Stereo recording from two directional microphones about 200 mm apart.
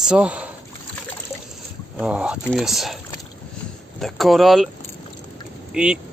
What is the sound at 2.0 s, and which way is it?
Speech, 5° right (ahead or behind).